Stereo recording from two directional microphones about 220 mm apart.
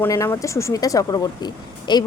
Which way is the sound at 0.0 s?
10° left (ahead or behind).